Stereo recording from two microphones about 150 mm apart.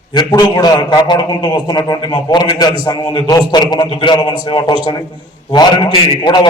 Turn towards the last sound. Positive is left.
turn(degrees=30)  # may be behind; listen again after turning